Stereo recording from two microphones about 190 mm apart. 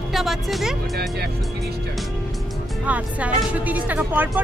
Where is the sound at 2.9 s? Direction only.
5° right (ahead or behind).